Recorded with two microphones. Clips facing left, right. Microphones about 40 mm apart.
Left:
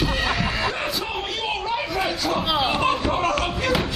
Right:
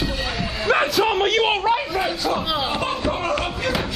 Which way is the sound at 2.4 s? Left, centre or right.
Centre.